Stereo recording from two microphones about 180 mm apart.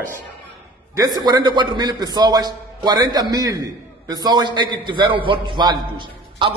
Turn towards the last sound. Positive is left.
turn(degrees=-25)  # may be behind; listen again after turning